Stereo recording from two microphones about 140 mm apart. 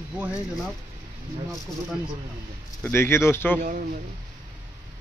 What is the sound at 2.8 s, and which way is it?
Speech, 15° left (ahead or behind).